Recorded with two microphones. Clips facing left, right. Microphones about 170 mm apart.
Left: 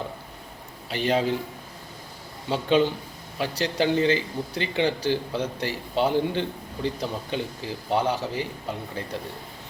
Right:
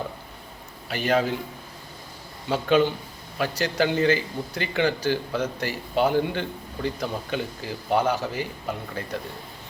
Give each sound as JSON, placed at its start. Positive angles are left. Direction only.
{"t": 0.9, "sound": "speech", "side_deg": 25}
{"t": 2.5, "sound": "speech", "side_deg": 30}